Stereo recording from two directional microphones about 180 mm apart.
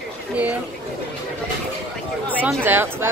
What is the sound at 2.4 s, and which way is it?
Speech, 10° right (ahead or behind).